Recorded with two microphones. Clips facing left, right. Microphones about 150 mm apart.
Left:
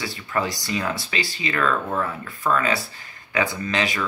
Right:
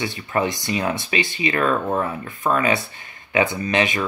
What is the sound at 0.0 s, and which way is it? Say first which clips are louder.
Speech: right 3 dB; 20° right (ahead or behind).